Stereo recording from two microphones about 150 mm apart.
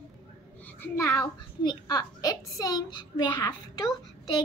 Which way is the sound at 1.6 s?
30° left (ahead or behind).